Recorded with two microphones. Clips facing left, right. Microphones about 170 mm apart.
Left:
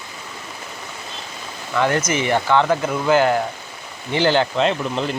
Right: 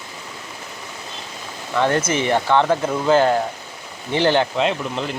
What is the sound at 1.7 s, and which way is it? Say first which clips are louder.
Speech: even; 25° right (ahead or behind).